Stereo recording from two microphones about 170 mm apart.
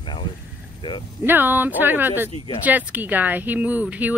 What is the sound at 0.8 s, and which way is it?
Speech, 30° left (ahead or behind).